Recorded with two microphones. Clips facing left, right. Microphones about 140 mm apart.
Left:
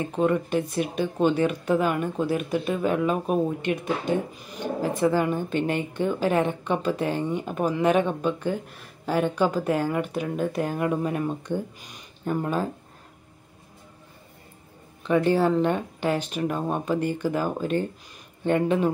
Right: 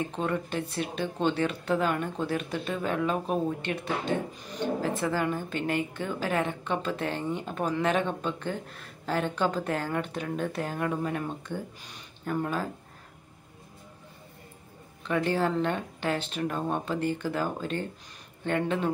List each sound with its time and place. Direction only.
0.1 s speech: 15° left (ahead or behind)
15.0 s speech: 15° left (ahead or behind)